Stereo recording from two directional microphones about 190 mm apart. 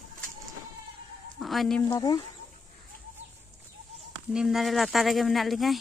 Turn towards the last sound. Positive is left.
turn(degrees=0)  # may be behind; listen again after turning